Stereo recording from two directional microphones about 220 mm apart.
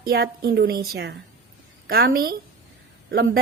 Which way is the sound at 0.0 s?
45° right (ahead or behind).